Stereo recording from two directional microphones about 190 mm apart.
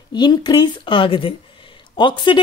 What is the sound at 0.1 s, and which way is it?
Speech, 25° left (ahead or behind).